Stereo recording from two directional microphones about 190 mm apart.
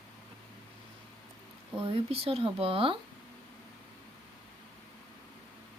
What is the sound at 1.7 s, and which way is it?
Speech, 30° right (ahead or behind).